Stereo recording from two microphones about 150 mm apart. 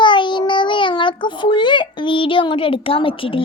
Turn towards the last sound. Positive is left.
turn(degrees=35)  # may be behind; listen again after turning